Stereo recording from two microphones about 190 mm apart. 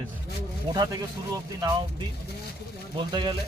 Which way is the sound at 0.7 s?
20° right (ahead or behind).